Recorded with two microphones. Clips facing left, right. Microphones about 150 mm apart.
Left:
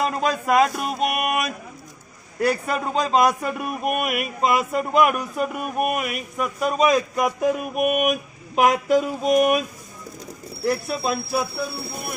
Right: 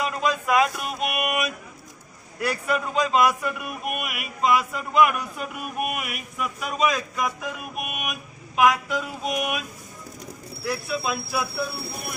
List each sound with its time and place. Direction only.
0.0 s a sound: 40° left (ahead or behind)
2.4 s a man's voice: 40° left (ahead or behind)
10.7 s speech: 40° left (ahead or behind)